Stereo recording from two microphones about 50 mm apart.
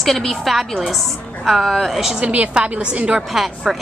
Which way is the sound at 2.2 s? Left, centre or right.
Right.